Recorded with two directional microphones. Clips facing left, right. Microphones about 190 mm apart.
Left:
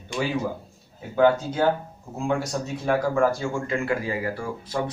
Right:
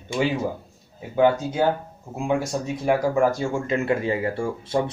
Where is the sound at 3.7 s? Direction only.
25° right (ahead or behind).